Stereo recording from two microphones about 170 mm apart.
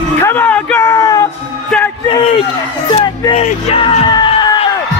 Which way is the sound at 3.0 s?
30° left (ahead or behind).